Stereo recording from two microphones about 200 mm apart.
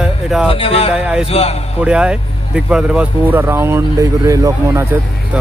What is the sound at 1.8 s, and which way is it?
Speech, 5° right (ahead or behind).